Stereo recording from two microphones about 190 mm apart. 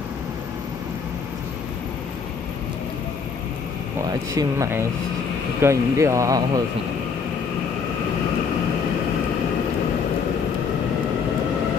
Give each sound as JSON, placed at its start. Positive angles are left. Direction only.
{"t": 4.1, "sound": "speech", "side_deg": -15}